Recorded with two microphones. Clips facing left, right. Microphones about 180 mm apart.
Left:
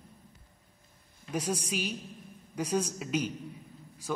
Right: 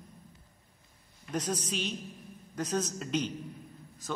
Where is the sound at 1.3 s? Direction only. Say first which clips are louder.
Left 1 dB; 10° left (ahead or behind).